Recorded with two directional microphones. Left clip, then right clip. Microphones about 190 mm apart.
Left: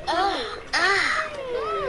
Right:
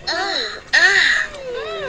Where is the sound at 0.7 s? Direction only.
Centre (ahead or behind).